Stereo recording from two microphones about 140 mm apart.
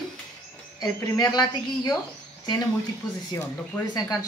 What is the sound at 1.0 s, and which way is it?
Speech, 25° left (ahead or behind).